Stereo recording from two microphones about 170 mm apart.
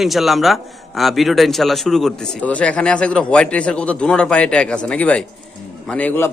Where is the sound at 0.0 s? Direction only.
Centre (ahead or behind).